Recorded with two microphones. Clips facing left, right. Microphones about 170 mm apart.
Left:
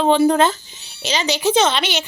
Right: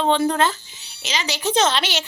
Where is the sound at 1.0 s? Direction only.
30° left (ahead or behind).